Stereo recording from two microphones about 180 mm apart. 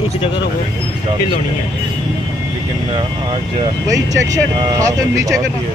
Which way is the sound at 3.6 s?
20° right (ahead or behind).